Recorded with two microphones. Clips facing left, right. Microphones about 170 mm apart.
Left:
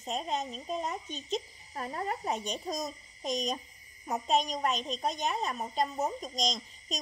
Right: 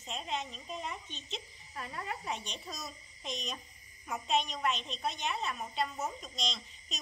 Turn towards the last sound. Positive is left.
turn(degrees=40)  # may be behind; listen again after turning